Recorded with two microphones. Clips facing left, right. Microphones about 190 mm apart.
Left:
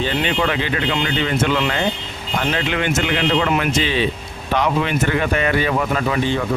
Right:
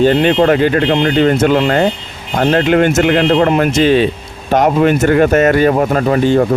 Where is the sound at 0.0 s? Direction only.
45° right (ahead or behind).